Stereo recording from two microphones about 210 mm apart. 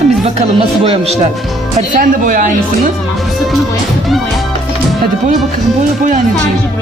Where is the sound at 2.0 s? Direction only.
40° right (ahead or behind).